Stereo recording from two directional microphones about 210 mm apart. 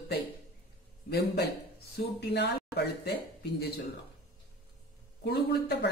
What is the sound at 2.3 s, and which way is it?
Speech, 55° left (ahead or behind).